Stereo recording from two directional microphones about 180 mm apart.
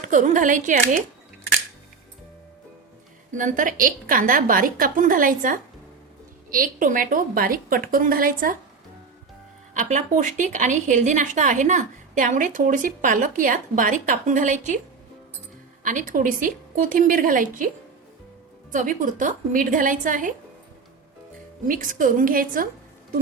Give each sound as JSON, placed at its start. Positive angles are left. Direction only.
{"t": 0.0, "sound": "speech", "side_deg": -45}
{"t": 3.3, "sound": "speech", "side_deg": -45}
{"t": 9.7, "sound": "speech", "side_deg": -40}
{"t": 15.8, "sound": "speech", "side_deg": -45}
{"t": 18.7, "sound": "speech", "side_deg": -45}
{"t": 21.7, "sound": "speech", "side_deg": -50}